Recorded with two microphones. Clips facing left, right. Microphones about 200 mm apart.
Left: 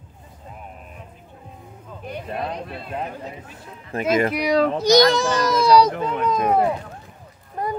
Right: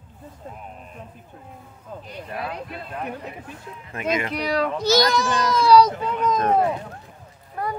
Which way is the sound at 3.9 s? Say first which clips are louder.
Left 6 dB; 35° left (ahead or behind).